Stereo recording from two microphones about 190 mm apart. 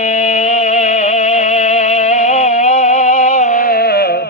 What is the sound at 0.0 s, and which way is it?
Music, 40° left (ahead or behind).